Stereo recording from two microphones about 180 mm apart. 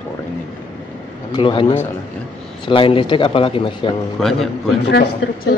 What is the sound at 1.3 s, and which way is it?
Speech, 25° left (ahead or behind).